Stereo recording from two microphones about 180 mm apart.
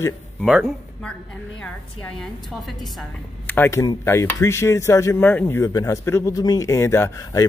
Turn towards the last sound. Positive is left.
turn(degrees=15)  # may be behind; listen again after turning